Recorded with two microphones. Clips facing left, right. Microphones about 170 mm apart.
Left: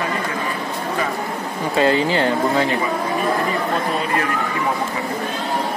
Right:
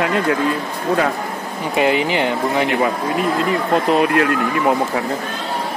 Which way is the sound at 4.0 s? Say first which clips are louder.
Right 6 dB; 75° right (ahead or behind).